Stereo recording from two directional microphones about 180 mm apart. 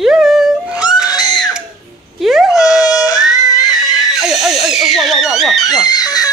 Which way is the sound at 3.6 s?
Centre (ahead or behind).